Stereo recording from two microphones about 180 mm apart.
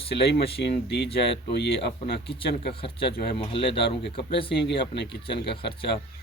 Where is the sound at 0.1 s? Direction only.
65° left (ahead or behind).